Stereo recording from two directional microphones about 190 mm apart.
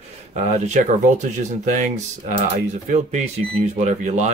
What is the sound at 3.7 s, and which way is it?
Speech, 35° right (ahead or behind).